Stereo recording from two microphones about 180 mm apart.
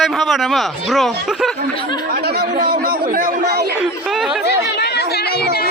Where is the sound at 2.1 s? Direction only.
55° right (ahead or behind).